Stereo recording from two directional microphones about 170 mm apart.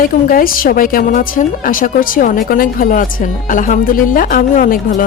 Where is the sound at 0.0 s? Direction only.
60° left (ahead or behind).